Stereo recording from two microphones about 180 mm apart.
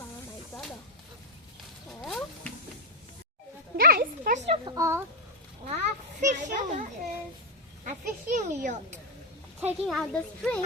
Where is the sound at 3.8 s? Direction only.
55° right (ahead or behind).